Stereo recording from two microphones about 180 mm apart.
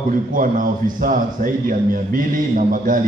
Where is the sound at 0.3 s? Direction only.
50° right (ahead or behind).